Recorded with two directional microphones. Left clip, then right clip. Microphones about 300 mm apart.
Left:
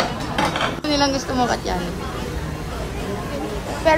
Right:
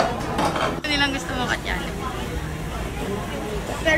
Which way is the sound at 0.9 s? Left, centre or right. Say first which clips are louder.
Left 6 dB; centre.